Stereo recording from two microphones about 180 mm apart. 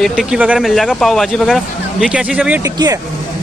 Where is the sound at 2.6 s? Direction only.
20° right (ahead or behind).